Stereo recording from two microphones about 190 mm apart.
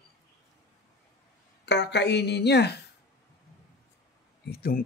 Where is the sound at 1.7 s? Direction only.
65° left (ahead or behind).